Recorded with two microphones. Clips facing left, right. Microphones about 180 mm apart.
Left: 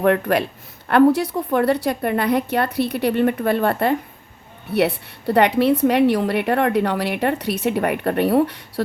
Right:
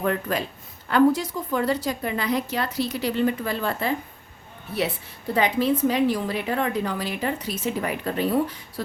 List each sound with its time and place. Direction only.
0.0 s a woman's voice: 65° left (ahead or behind)